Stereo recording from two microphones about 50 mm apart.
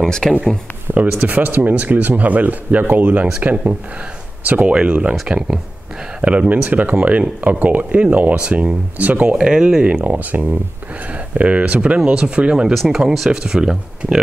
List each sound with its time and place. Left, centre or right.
0.0 s speech: centre
0.9 s a sound: right
1.2 s speech: right
4.5 s speech: right
5.2 s speech: centre
6.7 s speech: right
9.3 s speech: centre
10.0 s speech: right
12.7 s speech: centre